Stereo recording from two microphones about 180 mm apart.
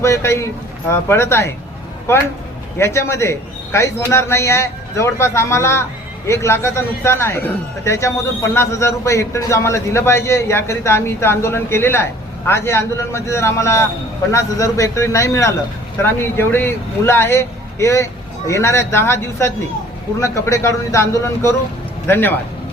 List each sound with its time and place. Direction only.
0.0 s a man's voice: 15° left (ahead or behind)
2.7 s a man's voice: 15° left (ahead or behind)